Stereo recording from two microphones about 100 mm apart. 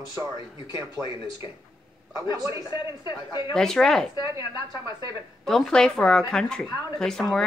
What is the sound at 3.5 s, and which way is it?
Speech, 5° left (ahead or behind).